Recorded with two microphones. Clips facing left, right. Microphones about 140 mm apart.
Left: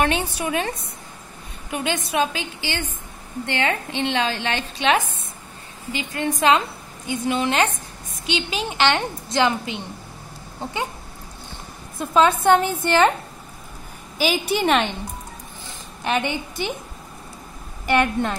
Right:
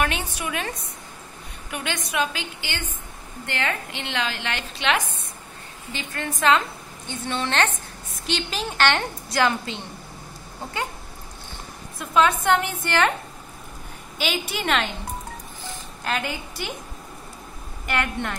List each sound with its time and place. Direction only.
0.0 s a woman's voice: 30° left (ahead or behind)
7.1 s a woman's voice: 10° left (ahead or behind)
12.0 s a woman's voice: 25° left (ahead or behind)
14.2 s a woman's voice: 30° left (ahead or behind)
16.0 s a woman's voice: 20° left (ahead or behind)
17.8 s a woman's voice: 25° left (ahead or behind)